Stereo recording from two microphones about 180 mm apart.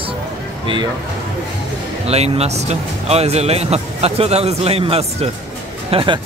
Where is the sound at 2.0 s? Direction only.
35° right (ahead or behind).